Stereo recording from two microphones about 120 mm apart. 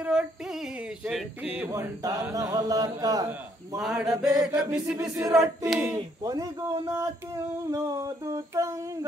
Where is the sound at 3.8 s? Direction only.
5° right (ahead or behind).